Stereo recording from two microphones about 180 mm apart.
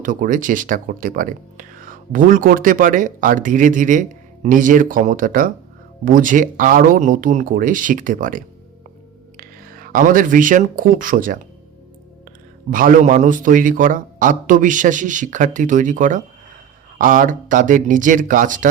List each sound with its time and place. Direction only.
0.0 s speech: 50° right (ahead or behind)
12.7 s speech: 50° right (ahead or behind)